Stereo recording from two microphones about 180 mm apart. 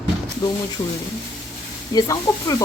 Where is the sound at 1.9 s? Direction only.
20° left (ahead or behind).